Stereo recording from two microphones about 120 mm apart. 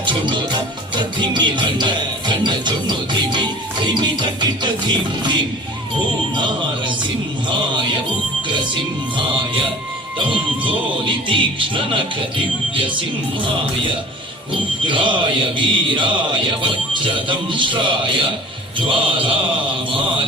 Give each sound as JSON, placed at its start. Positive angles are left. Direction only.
{"t": 0.0, "sound": "music", "side_deg": -40}
{"t": 14.8, "sound": "music", "side_deg": -45}